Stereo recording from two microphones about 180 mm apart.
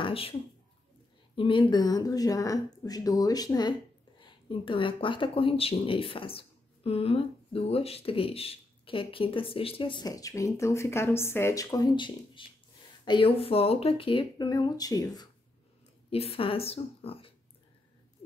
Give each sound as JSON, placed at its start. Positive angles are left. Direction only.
{"t": 0.0, "sound": "a sound", "side_deg": 30}
{"t": 1.3, "sound": "speech", "side_deg": 30}
{"t": 16.1, "sound": "a woman's voice", "side_deg": 35}